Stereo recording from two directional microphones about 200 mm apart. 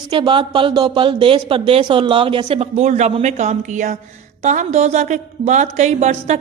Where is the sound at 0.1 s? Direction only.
25° right (ahead or behind).